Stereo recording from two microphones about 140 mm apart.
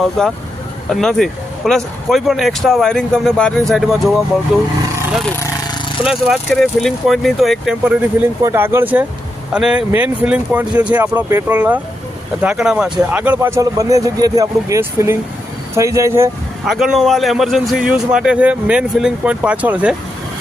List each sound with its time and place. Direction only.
0.0 s a man's voice: centre (ahead or behind)
6.1 s a man's voice: 5° right (ahead or behind)
8.4 s speech: 20° right (ahead or behind)
16.6 s a man's voice: centre (ahead or behind)